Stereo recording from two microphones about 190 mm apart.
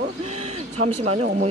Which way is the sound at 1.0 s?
35° right (ahead or behind).